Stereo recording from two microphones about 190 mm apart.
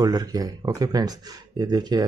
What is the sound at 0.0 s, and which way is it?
Speech, 20° right (ahead or behind).